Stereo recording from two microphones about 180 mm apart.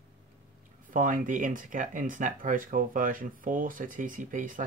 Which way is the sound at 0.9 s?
50° right (ahead or behind).